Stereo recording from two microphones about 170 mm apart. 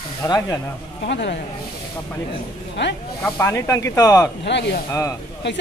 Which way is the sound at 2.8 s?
90° left.